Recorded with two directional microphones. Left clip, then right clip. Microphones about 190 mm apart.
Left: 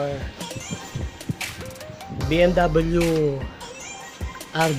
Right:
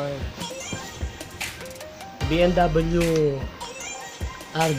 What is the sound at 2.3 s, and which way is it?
Speech, 10° left (ahead or behind).